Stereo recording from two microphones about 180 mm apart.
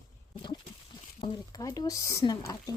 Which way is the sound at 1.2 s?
20° left (ahead or behind).